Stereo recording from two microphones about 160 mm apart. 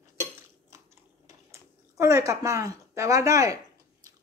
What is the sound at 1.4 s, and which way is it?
Speech, 20° right (ahead or behind).